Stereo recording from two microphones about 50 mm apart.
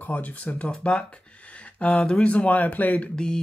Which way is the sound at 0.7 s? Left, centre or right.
Centre.